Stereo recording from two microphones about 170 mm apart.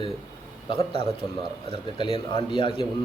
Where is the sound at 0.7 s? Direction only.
35° left (ahead or behind).